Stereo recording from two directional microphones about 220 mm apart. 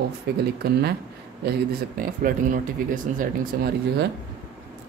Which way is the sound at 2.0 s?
40° right (ahead or behind).